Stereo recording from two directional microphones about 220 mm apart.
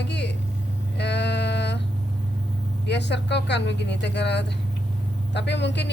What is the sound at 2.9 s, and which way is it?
Speech, 50° left (ahead or behind).